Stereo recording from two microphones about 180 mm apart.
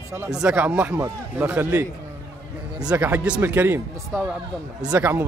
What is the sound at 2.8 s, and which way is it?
Speech, 10° right (ahead or behind).